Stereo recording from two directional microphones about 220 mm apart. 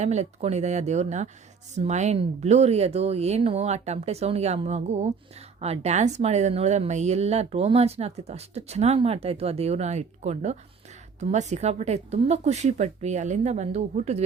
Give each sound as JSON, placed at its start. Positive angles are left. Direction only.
{"t": 0.0, "sound": "speech", "side_deg": -30}